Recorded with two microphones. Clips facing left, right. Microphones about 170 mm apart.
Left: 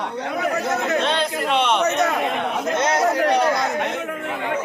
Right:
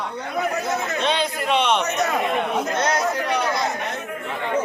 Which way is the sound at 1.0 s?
Centre (ahead or behind).